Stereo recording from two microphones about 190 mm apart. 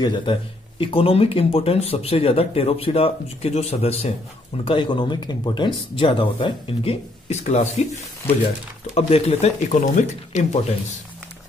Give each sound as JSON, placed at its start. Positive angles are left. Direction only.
{"t": 0.0, "sound": "speech", "side_deg": 25}